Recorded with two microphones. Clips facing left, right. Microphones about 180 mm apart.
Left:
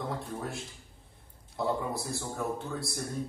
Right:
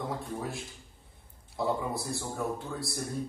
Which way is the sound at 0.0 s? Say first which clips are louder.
Right 1 dB; centre (ahead or behind).